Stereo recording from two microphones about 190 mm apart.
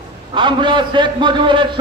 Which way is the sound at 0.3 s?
25° right (ahead or behind).